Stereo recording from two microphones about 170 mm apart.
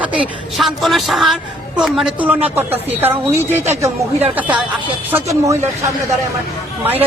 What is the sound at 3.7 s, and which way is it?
A man's voice, 15° right (ahead or behind).